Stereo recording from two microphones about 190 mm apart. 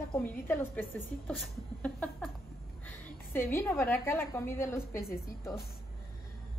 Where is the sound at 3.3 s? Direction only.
10° left (ahead or behind).